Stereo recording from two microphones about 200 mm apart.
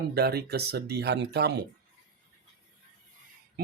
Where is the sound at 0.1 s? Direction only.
50° right (ahead or behind).